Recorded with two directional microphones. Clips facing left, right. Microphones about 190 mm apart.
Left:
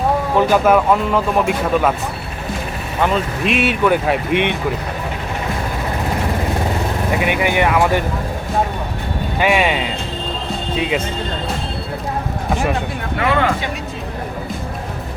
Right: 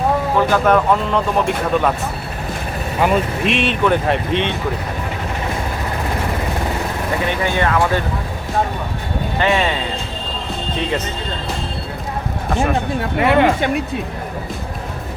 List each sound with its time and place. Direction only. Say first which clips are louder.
0.3 s speech: left 2 dB; 10° left (ahead or behind)
3.0 s speech: right 1 dB; centre (ahead or behind); by 4.5 s 15° left (ahead or behind)
7.2 s speech: left 2 dB; 15° left (ahead or behind)
9.4 s speech: left 2 dB; 10° left (ahead or behind)
13.1 s speech: right 4 dB; 20° right (ahead or behind)